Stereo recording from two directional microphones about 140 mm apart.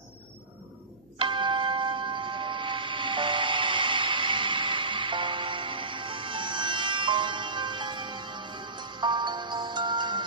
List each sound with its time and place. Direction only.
1.1 s tubular bells: 35° right (ahead or behind)